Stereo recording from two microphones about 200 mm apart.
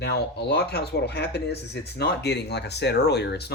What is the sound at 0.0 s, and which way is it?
Speech, 55° left (ahead or behind).